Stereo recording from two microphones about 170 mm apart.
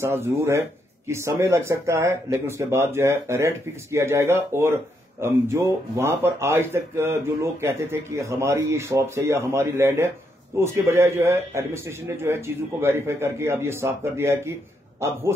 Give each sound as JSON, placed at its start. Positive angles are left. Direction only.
{"t": 0.0, "sound": "speech", "side_deg": -15}